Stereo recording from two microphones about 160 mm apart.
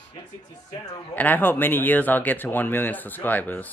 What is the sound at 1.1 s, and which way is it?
Speech, 10° left (ahead or behind).